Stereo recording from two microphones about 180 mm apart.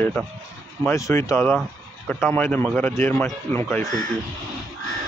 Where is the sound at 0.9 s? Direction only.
15° left (ahead or behind).